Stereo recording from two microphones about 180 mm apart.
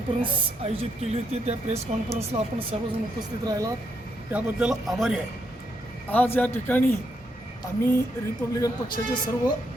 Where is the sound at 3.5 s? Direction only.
20° right (ahead or behind).